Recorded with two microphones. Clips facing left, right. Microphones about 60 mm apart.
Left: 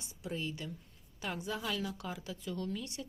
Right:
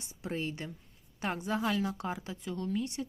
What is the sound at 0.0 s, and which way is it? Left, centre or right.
A woman's voice, right.